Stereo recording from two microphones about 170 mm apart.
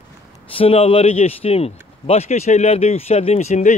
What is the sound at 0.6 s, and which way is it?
A man's voice, 35° left (ahead or behind).